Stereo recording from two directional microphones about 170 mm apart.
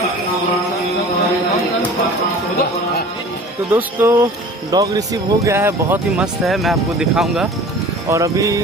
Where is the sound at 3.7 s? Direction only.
10° right (ahead or behind).